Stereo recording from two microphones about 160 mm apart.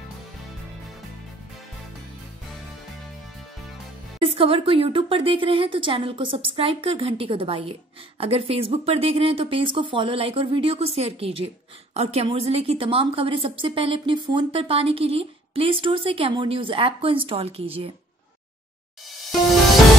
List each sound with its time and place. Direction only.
4.2 s speech: 35° right (ahead or behind)